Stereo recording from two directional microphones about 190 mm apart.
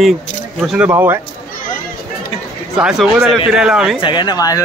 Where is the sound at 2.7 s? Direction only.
5° right (ahead or behind).